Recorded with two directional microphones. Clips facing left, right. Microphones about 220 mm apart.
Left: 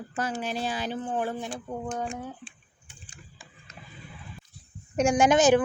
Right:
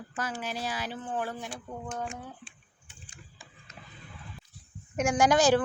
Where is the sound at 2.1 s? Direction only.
35° left (ahead or behind).